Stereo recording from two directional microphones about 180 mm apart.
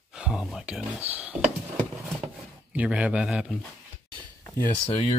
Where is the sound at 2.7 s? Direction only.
5° right (ahead or behind).